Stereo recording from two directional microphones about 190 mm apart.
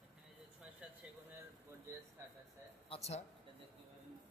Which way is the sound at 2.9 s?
35° left (ahead or behind).